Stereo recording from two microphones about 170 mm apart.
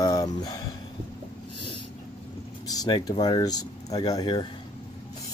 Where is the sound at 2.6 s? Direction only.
20° left (ahead or behind).